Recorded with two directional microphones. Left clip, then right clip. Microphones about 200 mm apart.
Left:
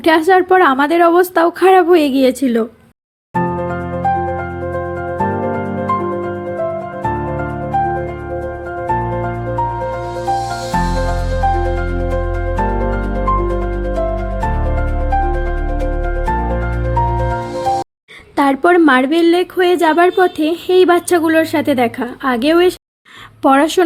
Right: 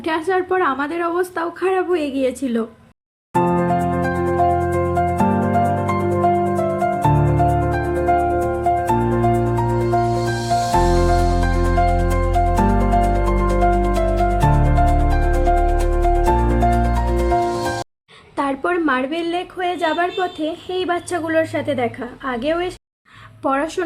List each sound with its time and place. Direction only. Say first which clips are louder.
0.0 s a woman's voice: left 9 dB; 35° left (ahead or behind)
18.3 s speech: left 9 dB; 35° left (ahead or behind)